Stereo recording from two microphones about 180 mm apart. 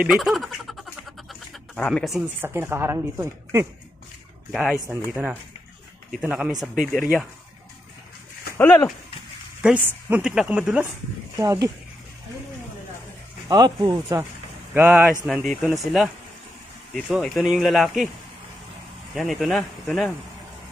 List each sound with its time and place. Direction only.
0.0 s speech: centre (ahead or behind)
1.8 s speech: 5° left (ahead or behind)
2.4 s a woman's voice: 15° right (ahead or behind)
8.5 s speech: 10° left (ahead or behind)
9.6 s a woman's voice: 5° right (ahead or behind)
11.3 s speech: 20° right (ahead or behind)
13.5 s a woman's voice: 20° right (ahead or behind)
15.2 s speech: centre (ahead or behind)
17.1 s speech: centre (ahead or behind)
19.1 s speech: centre (ahead or behind)